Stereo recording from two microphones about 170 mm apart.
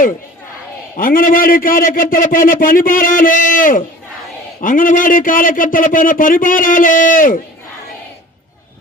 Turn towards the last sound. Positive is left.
turn(degrees=50)  # may be behind; listen again after turning